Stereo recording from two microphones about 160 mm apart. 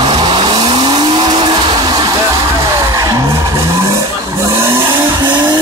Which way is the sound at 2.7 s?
20° right (ahead or behind).